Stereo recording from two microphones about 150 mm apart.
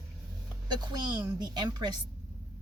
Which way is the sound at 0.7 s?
30° right (ahead or behind).